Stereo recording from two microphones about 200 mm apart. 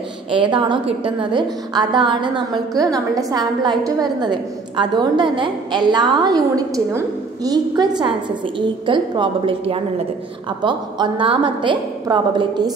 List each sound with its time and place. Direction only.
0.3 s a woman's voice: 25° right (ahead or behind)